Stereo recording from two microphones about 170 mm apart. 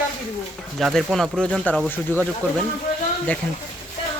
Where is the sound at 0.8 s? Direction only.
Centre (ahead or behind).